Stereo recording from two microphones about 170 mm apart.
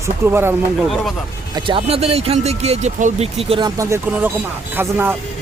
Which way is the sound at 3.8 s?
15° right (ahead or behind).